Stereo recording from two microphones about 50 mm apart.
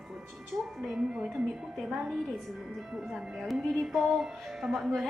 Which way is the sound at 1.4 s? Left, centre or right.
Centre.